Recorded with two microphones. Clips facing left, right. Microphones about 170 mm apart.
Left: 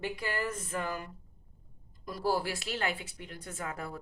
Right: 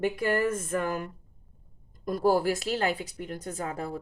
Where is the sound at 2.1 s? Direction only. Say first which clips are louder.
Right 7 dB; 50° right (ahead or behind); by 3.9 s 35° right (ahead or behind).